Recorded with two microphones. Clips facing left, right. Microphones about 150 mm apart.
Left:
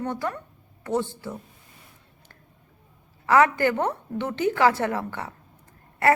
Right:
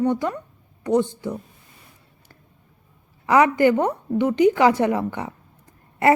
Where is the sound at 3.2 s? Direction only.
15° right (ahead or behind).